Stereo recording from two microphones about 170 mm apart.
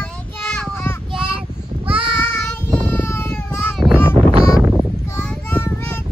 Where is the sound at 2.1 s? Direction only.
15° left (ahead or behind).